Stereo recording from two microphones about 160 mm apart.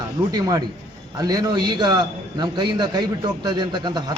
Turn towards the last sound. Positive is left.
turn(degrees=-25)  # may be behind; listen again after turning